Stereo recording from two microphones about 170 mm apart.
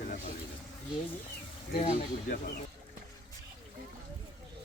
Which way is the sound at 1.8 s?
40° left (ahead or behind).